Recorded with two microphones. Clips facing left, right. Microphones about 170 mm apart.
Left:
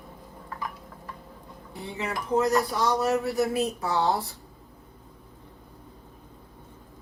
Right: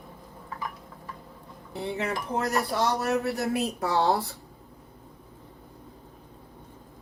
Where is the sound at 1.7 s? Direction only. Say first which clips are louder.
Right 3 dB; 60° right (ahead or behind).